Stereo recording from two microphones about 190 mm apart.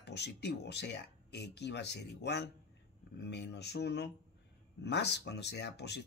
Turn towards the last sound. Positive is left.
turn(degrees=65)  # may be behind; listen again after turning